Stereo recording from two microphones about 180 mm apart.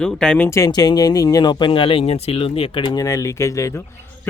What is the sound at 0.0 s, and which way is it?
Speech, 5° left (ahead or behind).